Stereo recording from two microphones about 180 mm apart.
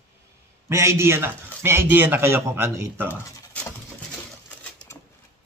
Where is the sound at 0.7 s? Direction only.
15° right (ahead or behind).